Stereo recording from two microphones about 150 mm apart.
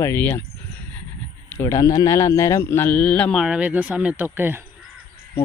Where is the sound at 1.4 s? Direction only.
20° left (ahead or behind).